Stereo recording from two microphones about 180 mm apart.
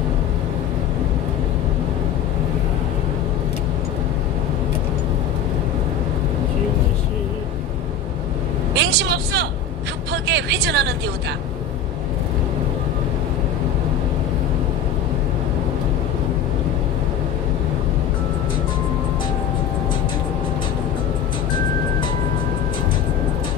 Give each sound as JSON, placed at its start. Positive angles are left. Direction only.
{"t": 8.7, "sound": "vehicle", "side_deg": -70}